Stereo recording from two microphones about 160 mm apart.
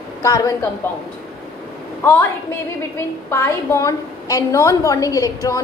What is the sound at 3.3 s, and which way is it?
A woman's voice, 15° left (ahead or behind).